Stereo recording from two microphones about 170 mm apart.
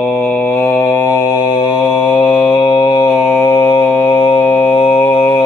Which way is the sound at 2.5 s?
25° left (ahead or behind).